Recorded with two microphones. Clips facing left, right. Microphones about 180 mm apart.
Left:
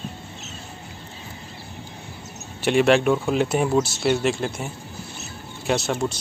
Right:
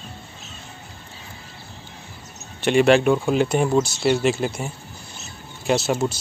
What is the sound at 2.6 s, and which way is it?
Speech, centre (ahead or behind).